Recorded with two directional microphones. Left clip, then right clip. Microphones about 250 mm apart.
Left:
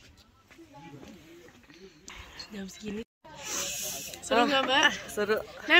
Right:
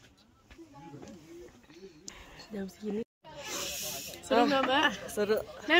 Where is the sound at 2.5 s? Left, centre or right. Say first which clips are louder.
Right 4 dB; right.